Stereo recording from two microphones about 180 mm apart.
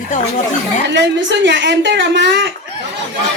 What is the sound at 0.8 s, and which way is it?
A woman's voice, 80° right.